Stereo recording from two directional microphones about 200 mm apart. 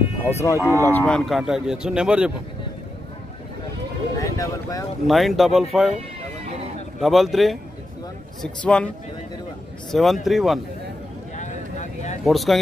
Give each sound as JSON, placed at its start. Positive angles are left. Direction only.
{"t": 0.4, "sound": "speech", "side_deg": 15}
{"t": 4.2, "sound": "a sound", "side_deg": 15}
{"t": 5.0, "sound": "speech", "side_deg": 0}
{"t": 7.0, "sound": "speech", "side_deg": 0}
{"t": 11.3, "sound": "a sound", "side_deg": 35}
{"t": 12.3, "sound": "speech", "side_deg": 0}